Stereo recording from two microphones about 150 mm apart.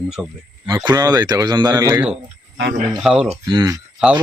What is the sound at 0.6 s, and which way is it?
A man's voice, 30° right (ahead or behind).